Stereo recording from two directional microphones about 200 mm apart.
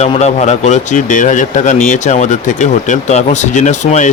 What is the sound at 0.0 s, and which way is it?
Speech, 35° left (ahead or behind).